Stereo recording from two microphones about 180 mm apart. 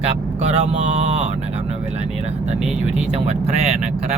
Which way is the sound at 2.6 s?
5° right (ahead or behind).